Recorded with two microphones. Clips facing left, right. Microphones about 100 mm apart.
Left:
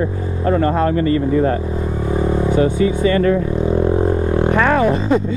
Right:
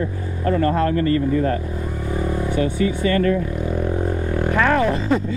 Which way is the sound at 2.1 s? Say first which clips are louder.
Left 6 dB; 25° left (ahead or behind).